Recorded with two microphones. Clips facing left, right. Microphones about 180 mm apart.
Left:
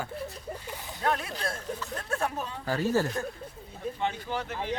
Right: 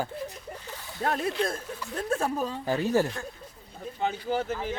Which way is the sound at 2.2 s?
35° right (ahead or behind).